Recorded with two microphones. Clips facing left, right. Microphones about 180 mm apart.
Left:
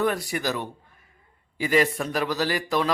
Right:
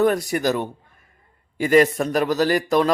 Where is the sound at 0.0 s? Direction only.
45° right (ahead or behind).